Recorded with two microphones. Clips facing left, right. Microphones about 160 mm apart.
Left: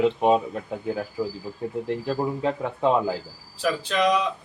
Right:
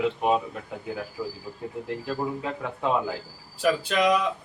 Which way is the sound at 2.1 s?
30° left (ahead or behind).